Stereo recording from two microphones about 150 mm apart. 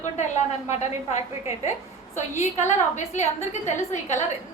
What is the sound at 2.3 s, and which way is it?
A woman's voice, 50° left (ahead or behind).